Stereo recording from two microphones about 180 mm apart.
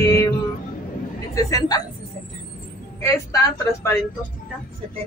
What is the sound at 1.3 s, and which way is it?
Speech, 20° left (ahead or behind).